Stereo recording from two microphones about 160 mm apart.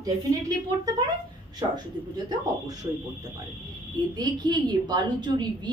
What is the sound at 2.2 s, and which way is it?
Speech, 20° right (ahead or behind).